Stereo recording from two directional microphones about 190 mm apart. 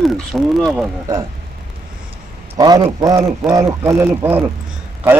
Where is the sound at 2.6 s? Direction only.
20° right (ahead or behind).